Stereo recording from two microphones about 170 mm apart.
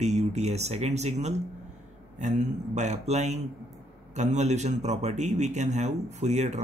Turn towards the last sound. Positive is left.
turn(degrees=-45)  # may be behind; listen again after turning